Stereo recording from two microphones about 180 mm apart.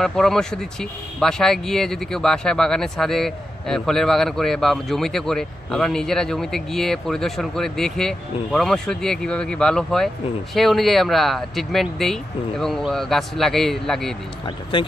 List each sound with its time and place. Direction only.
0.0 s speech: centre (ahead or behind)
14.7 s speech: 25° left (ahead or behind)